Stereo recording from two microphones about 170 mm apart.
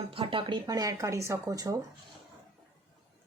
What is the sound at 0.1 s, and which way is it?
Speech, 30° right (ahead or behind).